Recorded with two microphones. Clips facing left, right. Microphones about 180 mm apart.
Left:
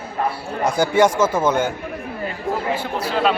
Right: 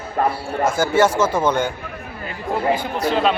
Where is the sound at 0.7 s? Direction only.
15° left (ahead or behind).